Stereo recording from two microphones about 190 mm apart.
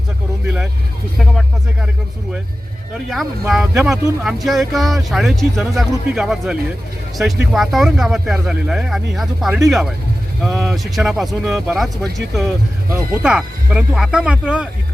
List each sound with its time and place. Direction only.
0.4 s speech: 5° right (ahead or behind)
3.1 s speech: centre (ahead or behind)
12.9 s speech: 5° right (ahead or behind)